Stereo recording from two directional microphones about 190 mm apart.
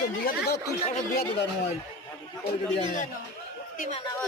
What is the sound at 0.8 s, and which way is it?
Speech, 40° left (ahead or behind).